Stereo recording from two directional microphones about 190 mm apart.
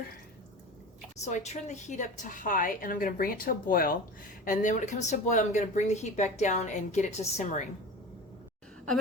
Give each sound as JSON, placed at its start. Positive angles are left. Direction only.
{"t": 1.2, "sound": "a woman's voice", "side_deg": 35}